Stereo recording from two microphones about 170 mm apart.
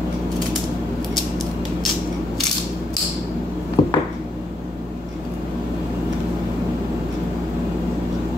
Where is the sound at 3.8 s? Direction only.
35° left (ahead or behind).